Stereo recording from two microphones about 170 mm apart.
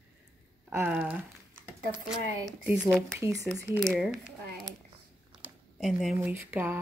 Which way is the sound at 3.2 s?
20° right (ahead or behind).